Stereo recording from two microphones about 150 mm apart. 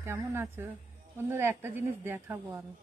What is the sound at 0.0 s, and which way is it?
Speech, 15° right (ahead or behind).